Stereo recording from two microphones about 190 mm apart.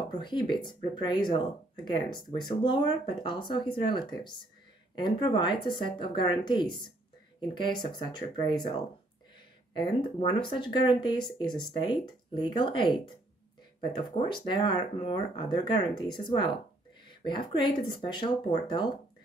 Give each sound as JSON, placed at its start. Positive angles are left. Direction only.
{"t": 0.1, "sound": "speech", "side_deg": 25}